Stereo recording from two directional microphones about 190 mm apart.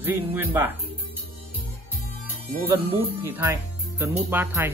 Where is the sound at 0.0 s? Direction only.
10° right (ahead or behind).